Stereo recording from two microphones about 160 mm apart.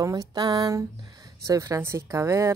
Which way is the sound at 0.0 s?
20° right (ahead or behind).